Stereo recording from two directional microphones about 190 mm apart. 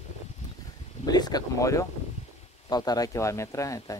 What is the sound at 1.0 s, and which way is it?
Speech, 20° left (ahead or behind).